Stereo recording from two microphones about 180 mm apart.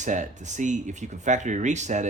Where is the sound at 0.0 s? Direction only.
45° right (ahead or behind).